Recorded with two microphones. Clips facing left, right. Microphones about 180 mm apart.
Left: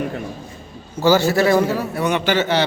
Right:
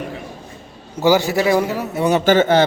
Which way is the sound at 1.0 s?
15° right (ahead or behind).